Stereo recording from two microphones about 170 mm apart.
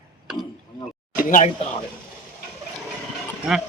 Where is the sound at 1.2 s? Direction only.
50° left (ahead or behind).